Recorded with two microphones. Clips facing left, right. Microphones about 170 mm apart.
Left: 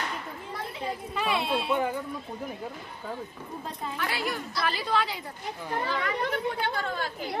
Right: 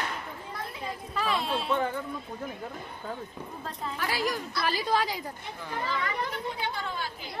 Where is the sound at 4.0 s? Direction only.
40° right (ahead or behind).